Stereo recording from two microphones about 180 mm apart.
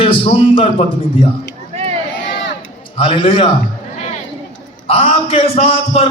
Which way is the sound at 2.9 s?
30° left (ahead or behind).